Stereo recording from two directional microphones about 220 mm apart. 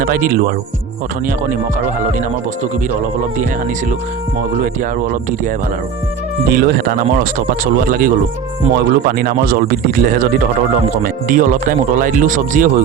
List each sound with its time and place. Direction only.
0.0 s speech: 40° right (ahead or behind)
4.6 s speech: 40° right (ahead or behind)